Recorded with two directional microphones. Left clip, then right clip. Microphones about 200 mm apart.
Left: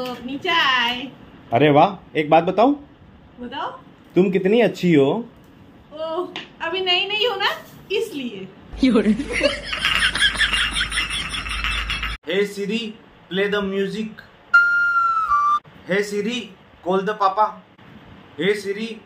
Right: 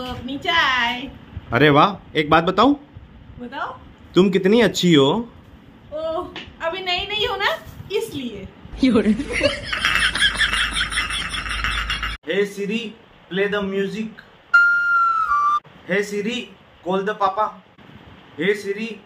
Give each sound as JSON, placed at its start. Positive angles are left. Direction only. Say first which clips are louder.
{"t": 0.4, "sound": "a woman's voice", "louder": "even", "side_deg": -15}
{"t": 4.1, "sound": "speech", "louder": "right 1 dB", "side_deg": -20}
{"t": 6.6, "sound": "a sound", "louder": "left 3 dB", "side_deg": -20}
{"t": 8.7, "sound": "snicker", "louder": "even", "side_deg": 0}
{"t": 13.3, "sound": "music", "louder": "even", "side_deg": 0}
{"t": 18.4, "sound": "a man's voice", "louder": "even", "side_deg": 5}